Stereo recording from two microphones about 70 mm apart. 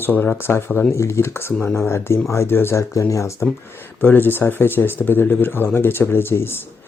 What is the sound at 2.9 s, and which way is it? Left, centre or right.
Speech, left.